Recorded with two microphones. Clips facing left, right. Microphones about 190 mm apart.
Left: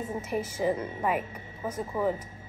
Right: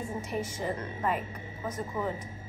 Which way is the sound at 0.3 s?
10° left (ahead or behind).